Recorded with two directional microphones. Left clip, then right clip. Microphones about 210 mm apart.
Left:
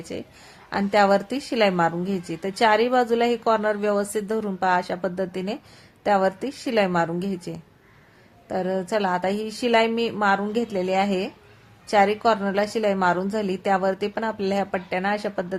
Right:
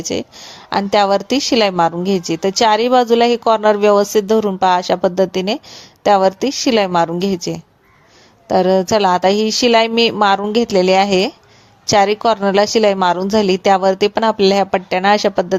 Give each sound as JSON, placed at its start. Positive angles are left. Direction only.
{"t": 0.1, "sound": "a woman's voice", "side_deg": -30}
{"t": 8.4, "sound": "a woman's voice", "side_deg": -30}